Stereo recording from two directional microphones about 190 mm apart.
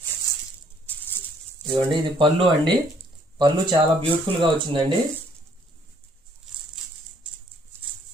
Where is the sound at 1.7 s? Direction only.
25° right (ahead or behind).